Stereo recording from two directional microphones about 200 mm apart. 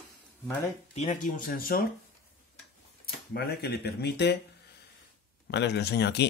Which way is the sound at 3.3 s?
55° left (ahead or behind).